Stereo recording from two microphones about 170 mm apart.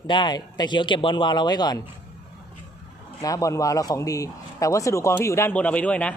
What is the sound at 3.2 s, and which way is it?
Speech, 20° left (ahead or behind).